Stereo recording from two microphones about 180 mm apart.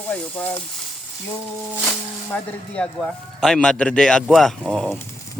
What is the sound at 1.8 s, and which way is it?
Speech, 5° left (ahead or behind).